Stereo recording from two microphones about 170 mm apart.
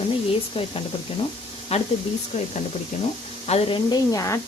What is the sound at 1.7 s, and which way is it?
Speech, 35° left (ahead or behind).